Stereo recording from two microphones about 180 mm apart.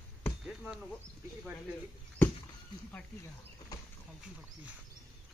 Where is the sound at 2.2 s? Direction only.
10° left (ahead or behind).